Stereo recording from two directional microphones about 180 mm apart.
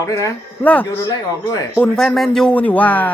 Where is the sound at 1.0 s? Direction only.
20° left (ahead or behind).